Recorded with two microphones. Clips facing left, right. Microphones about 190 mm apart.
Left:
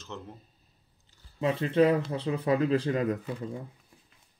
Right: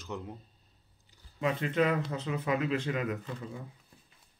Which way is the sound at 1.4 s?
30° left (ahead or behind).